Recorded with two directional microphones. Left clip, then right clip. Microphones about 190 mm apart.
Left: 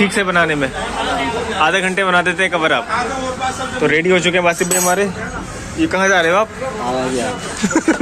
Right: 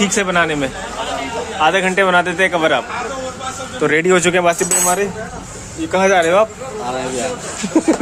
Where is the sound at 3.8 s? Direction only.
30° right (ahead or behind).